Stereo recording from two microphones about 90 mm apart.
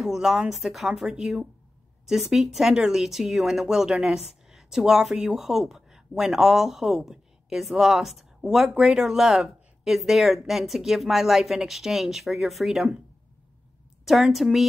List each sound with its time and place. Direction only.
0.0 s speech: 5° right (ahead or behind)
14.0 s speech: centre (ahead or behind)